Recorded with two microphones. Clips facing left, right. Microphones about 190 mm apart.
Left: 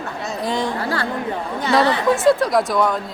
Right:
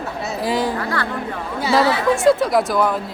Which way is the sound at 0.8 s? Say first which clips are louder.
Even; 30° left (ahead or behind).